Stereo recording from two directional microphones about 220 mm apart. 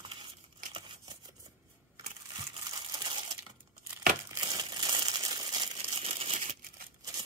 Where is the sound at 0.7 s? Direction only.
15° right (ahead or behind).